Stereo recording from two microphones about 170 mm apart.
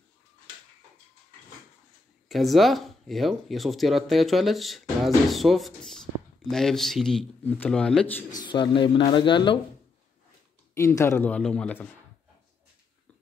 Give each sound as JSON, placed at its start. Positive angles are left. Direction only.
{"t": 2.2, "sound": "speech", "side_deg": 0}
{"t": 8.3, "sound": "speech", "side_deg": 25}
{"t": 10.7, "sound": "speech", "side_deg": 15}